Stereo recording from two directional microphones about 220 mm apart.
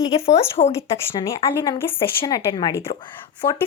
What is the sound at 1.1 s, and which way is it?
Speech, 15° left (ahead or behind).